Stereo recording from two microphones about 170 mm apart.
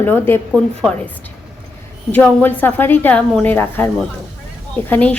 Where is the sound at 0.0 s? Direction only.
15° left (ahead or behind).